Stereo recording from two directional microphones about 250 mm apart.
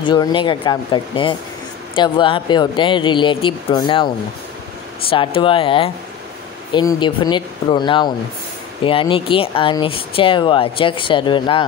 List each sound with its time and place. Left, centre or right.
0.0 s speech: centre
5.1 s speech: left